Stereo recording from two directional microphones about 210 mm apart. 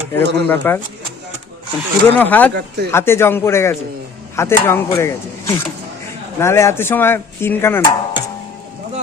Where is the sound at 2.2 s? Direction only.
10° left (ahead or behind).